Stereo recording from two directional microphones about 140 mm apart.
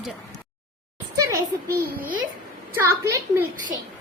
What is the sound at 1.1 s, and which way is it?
A woman's voice, 20° right (ahead or behind).